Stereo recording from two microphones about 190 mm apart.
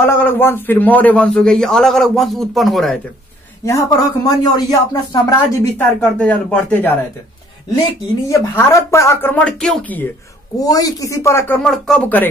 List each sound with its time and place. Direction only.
0.0 s a man's voice: 10° left (ahead or behind)
3.6 s a man's voice: 15° left (ahead or behind)
5.9 s a man's voice: 5° left (ahead or behind)
8.3 s a man's voice: 15° left (ahead or behind)
10.6 s a man's voice: 20° left (ahead or behind)